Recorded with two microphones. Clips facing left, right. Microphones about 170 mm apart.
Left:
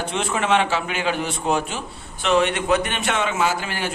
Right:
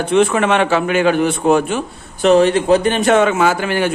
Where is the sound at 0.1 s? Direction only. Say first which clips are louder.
Right 8 dB; 60° right (ahead or behind).